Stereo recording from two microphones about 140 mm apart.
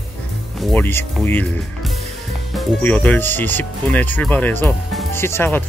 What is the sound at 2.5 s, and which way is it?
Music, centre (ahead or behind).